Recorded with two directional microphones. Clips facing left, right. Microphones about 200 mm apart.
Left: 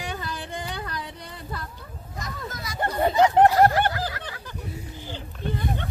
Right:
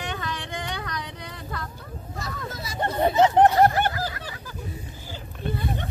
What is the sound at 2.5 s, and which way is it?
Chatter, 25° right (ahead or behind).